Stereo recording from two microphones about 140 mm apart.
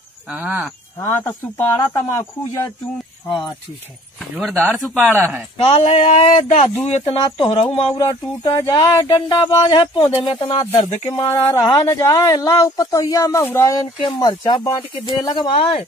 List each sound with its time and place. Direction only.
0.3 s speech: 10° right (ahead or behind)
1.0 s speech: 15° left (ahead or behind)
3.3 s speech: 35° left (ahead or behind)
4.4 s speech: 5° left (ahead or behind)
5.1 s speech: 15° right (ahead or behind)
5.6 s speech: 45° left (ahead or behind)
8.5 s speech: 30° left (ahead or behind); by 11.0 s 50° left (ahead or behind)
11.1 s speech: 25° left (ahead or behind)
14.2 s speech: 30° left (ahead or behind)